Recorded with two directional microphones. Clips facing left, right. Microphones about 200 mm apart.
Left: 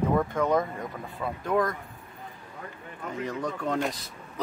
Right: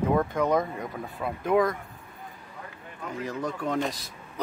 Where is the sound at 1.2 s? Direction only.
10° right (ahead or behind).